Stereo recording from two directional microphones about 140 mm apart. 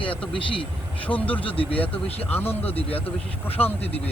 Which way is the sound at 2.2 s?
15° left (ahead or behind).